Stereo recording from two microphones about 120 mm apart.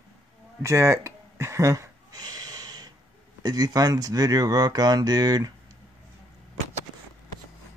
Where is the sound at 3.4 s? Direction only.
30° right (ahead or behind).